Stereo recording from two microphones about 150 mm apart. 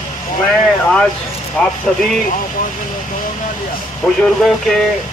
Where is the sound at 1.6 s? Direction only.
5° left (ahead or behind).